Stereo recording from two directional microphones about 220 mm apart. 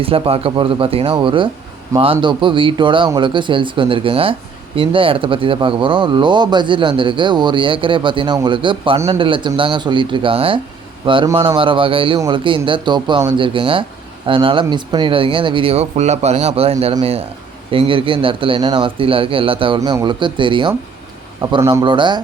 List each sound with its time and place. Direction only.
0.0 s speech: 25° right (ahead or behind)